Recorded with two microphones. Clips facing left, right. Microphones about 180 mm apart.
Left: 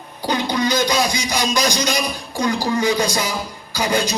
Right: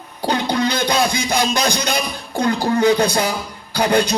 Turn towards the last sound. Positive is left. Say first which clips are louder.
# right 4 dB
turn(degrees=-65)  # may be behind; listen again after turning